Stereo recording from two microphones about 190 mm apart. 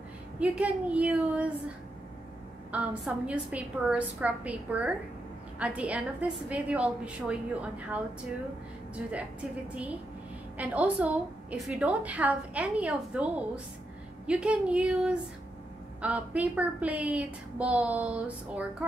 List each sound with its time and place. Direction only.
0.4 s a woman's voice: 5° right (ahead or behind)
2.7 s a woman's voice: 5° right (ahead or behind)
10.6 s a woman's voice: 10° right (ahead or behind)